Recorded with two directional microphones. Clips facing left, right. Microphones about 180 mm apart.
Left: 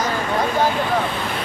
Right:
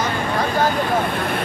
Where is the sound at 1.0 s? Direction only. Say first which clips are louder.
Right 2 dB; 55° right (ahead or behind).